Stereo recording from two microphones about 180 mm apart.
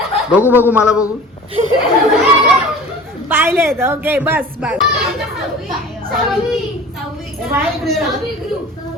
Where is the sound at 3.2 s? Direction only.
10° right (ahead or behind).